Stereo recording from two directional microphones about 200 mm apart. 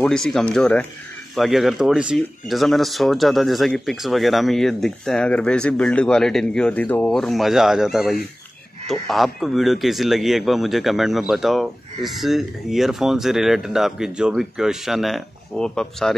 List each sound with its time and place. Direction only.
0.0 s a man's voice: 5° left (ahead or behind)